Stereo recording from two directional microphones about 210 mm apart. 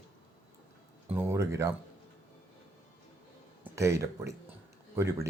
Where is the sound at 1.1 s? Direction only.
10° right (ahead or behind).